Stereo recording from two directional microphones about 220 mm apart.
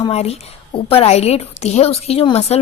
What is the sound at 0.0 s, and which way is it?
A woman's voice, 30° left (ahead or behind).